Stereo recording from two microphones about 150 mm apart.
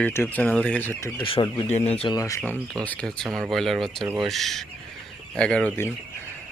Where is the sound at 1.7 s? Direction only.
45° left (ahead or behind).